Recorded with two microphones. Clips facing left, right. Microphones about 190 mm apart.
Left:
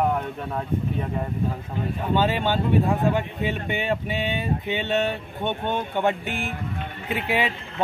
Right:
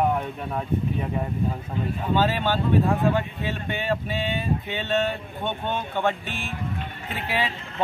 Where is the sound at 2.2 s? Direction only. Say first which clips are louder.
Left 1 dB; 15° left (ahead or behind).